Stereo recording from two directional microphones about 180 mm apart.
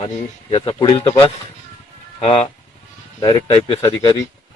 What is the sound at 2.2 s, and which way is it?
A man's voice, 30° left (ahead or behind).